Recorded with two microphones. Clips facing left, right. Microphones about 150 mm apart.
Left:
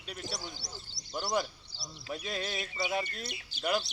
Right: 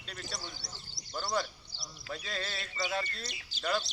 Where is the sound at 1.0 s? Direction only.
90° left.